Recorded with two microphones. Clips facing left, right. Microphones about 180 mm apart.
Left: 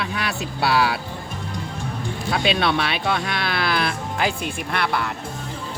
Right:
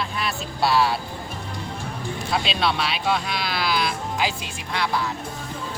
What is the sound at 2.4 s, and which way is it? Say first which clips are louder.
Speech: left 7 dB; 55° left (ahead or behind).